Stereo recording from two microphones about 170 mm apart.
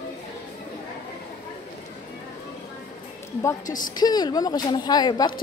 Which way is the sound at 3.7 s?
50° left (ahead or behind).